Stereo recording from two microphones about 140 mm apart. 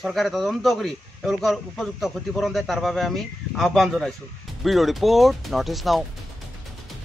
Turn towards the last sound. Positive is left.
turn(degrees=0)  # may be behind; listen again after turning